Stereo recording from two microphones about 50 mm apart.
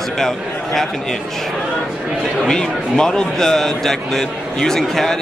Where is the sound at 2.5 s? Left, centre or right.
Centre.